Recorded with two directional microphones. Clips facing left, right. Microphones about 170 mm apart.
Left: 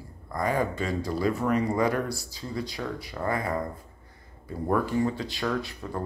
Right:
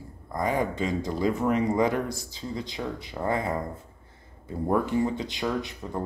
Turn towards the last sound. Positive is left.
turn(degrees=-20)  # may be behind; listen again after turning